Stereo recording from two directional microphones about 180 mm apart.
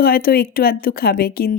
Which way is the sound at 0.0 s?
55° left (ahead or behind).